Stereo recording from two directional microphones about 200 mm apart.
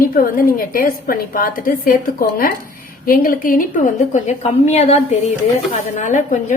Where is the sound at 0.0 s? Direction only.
45° left (ahead or behind).